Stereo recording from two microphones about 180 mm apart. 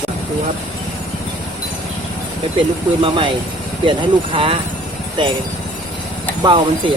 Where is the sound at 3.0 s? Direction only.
30° right (ahead or behind).